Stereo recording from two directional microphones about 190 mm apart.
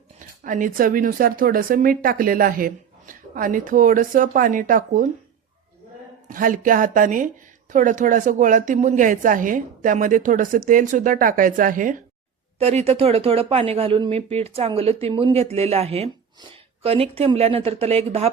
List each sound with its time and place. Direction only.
0.4 s speech: 45° right (ahead or behind)
6.2 s speech: 45° right (ahead or behind)
12.5 s speech: 30° right (ahead or behind)